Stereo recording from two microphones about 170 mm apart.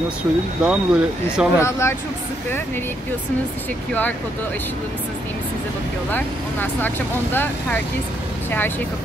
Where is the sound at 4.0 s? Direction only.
10° left (ahead or behind).